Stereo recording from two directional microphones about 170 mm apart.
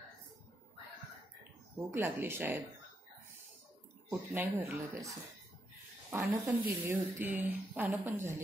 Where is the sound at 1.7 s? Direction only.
15° right (ahead or behind).